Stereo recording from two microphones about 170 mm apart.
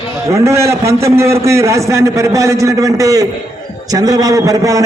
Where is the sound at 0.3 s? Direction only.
15° right (ahead or behind).